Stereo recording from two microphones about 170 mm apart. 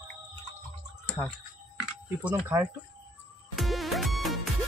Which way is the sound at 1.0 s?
10° left (ahead or behind).